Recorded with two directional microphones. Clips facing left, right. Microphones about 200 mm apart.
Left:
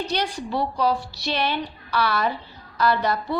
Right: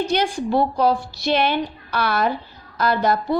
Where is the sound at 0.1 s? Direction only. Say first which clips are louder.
Right 6 dB; 50° right (ahead or behind).